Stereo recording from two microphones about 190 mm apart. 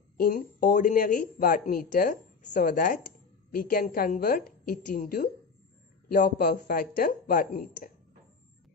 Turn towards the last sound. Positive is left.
turn(degrees=45)  # may be behind; listen again after turning